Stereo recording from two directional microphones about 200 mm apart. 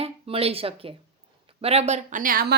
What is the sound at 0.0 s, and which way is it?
Speech, 30° right (ahead or behind).